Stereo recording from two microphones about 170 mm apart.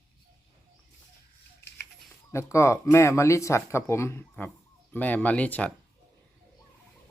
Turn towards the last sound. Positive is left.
turn(degrees=10)  # may be behind; listen again after turning